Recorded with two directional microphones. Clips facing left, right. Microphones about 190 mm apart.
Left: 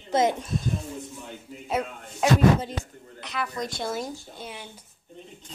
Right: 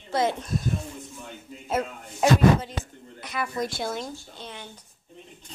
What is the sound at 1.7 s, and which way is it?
Speech, centre (ahead or behind).